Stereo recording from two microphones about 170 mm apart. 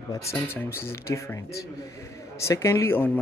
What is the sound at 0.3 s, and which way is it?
Speech, 15° left (ahead or behind).